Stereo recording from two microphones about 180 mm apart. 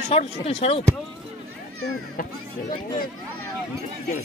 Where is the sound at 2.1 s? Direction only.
50° left (ahead or behind).